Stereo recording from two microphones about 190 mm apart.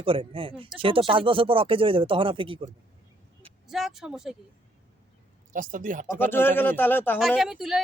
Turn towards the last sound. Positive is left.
turn(degrees=0)  # may be behind; listen again after turning